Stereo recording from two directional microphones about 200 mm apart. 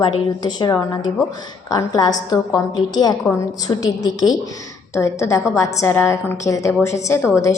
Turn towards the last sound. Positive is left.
turn(degrees=15)  # may be behind; listen again after turning